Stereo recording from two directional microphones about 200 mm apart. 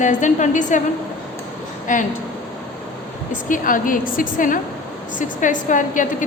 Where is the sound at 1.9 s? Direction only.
40° left (ahead or behind).